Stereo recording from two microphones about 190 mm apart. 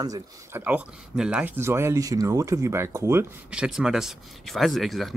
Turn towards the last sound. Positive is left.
turn(degrees=0)  # may be behind; listen again after turning